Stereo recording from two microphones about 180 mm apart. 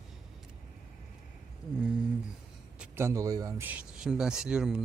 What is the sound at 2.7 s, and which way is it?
Speech, 15° right (ahead or behind).